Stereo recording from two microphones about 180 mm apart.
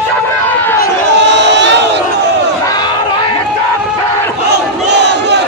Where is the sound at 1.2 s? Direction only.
75° right (ahead or behind).